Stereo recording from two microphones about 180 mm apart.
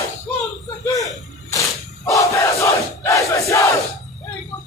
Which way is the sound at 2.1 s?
15° left (ahead or behind).